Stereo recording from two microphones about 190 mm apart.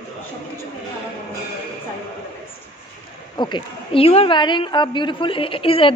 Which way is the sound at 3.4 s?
25° left (ahead or behind).